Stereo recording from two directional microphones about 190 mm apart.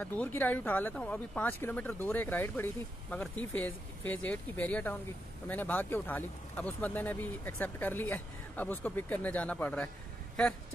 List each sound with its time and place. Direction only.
0.0 s speech: 10° left (ahead or behind)